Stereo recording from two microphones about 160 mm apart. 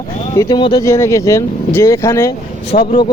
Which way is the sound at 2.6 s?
70° left (ahead or behind).